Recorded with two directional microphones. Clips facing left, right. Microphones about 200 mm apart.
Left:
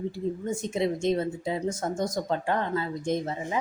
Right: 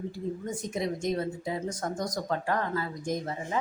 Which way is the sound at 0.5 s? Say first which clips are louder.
Left 6 dB; 25° left (ahead or behind).